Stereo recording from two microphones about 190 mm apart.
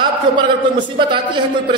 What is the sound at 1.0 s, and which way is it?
Speech, 25° right (ahead or behind).